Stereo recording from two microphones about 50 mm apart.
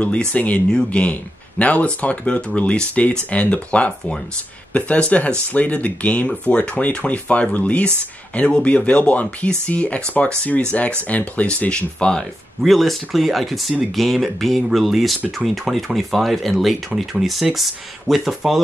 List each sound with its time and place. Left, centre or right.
0.3 s speech: left
11.7 s speech: centre
12.6 s speech: centre